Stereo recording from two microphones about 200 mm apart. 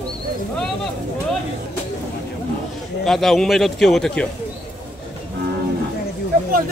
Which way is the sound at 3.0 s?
Centre (ahead or behind).